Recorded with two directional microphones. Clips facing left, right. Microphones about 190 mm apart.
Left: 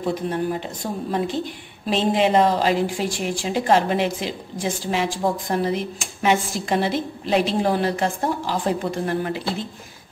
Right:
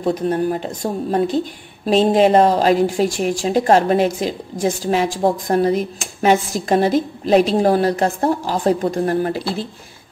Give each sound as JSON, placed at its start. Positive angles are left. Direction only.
{"t": 0.1, "sound": "speech", "side_deg": -45}